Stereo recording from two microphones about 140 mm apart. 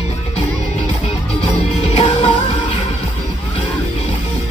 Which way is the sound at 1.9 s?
35° left (ahead or behind).